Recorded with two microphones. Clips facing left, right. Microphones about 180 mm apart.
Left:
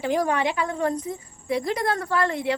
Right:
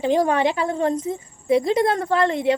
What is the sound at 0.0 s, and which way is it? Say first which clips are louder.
Speech: right 4 dB; 25° right (ahead or behind).